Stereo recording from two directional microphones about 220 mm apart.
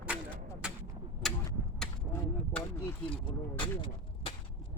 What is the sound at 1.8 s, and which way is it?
Mechanisms, 5° left (ahead or behind).